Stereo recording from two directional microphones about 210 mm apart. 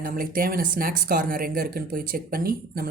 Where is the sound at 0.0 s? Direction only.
45° right (ahead or behind).